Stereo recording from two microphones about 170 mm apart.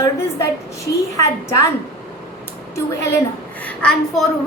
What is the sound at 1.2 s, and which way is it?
Speech, 15° left (ahead or behind).